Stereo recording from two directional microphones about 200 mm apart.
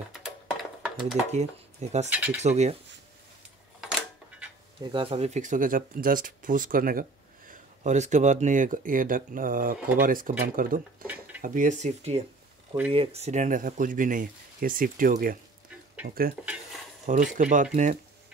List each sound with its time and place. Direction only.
0.2 s a sound: centre (ahead or behind)
1.3 s speech: 35° right (ahead or behind)
2.0 s speech: 10° right (ahead or behind)
2.4 s speech: 35° right (ahead or behind)
4.8 s speech: 25° right (ahead or behind); by 15.3 s 40° right (ahead or behind)
17.0 s speech: 40° right (ahead or behind)